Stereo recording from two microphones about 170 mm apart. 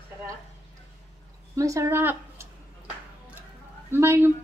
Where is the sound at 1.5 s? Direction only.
20° right (ahead or behind).